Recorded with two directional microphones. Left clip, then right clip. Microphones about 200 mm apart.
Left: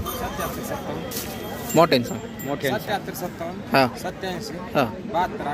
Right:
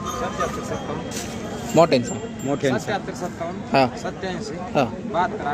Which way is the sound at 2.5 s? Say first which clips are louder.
Right 3 dB; 50° right (ahead or behind).